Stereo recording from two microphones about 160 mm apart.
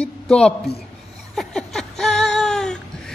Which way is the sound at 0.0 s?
5° left (ahead or behind).